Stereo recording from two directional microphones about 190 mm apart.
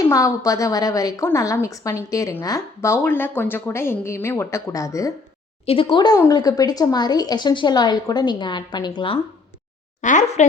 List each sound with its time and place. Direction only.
0.1 s a woman's voice: 15° left (ahead or behind)
5.6 s speech: 30° left (ahead or behind)
10.0 s speech: 40° left (ahead or behind)